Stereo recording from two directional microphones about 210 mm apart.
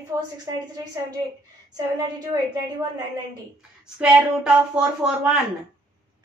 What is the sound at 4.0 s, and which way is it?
A woman's voice, 5° right (ahead or behind).